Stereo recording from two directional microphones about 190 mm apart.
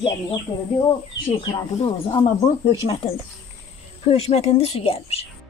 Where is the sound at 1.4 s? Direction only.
25° left (ahead or behind).